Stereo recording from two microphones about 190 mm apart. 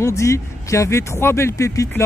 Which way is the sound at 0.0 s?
15° left (ahead or behind).